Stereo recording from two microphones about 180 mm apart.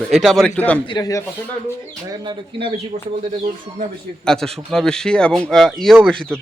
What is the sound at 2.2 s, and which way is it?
Speech, 25° right (ahead or behind).